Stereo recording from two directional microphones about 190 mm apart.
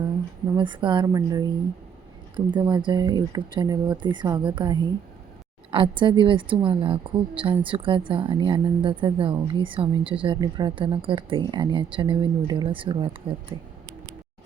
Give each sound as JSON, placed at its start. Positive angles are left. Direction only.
{"t": 0.5, "sound": "a woman's voice", "side_deg": -25}